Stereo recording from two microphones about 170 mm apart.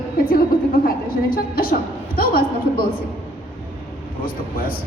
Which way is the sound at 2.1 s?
60° left (ahead or behind).